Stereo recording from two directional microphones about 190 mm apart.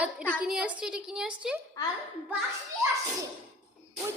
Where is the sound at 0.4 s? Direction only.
5° right (ahead or behind).